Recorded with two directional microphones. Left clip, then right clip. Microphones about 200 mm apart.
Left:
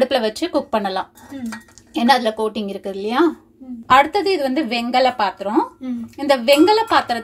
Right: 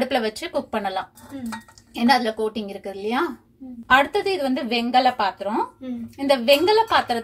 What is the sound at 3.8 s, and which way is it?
A woman's voice, 15° left (ahead or behind).